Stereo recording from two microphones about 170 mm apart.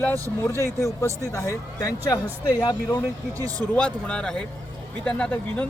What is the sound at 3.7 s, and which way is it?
Speech, 5° left (ahead or behind).